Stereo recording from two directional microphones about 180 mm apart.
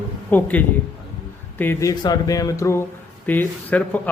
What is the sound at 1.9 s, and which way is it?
Speech, 20° left (ahead or behind).